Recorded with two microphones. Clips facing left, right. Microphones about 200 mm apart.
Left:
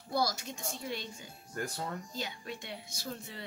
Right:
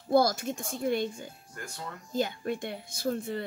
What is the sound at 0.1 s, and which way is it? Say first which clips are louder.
Speech: right 9 dB; 50° right (ahead or behind).